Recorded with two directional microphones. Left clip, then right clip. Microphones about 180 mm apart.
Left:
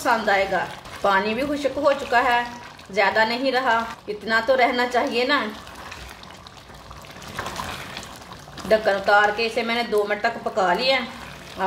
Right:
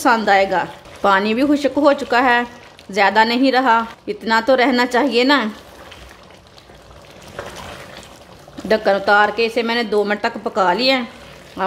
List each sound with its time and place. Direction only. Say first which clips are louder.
0.0 s speech: right 6 dB; 60° right (ahead or behind)
8.6 s speech: right 4 dB; 60° right (ahead or behind)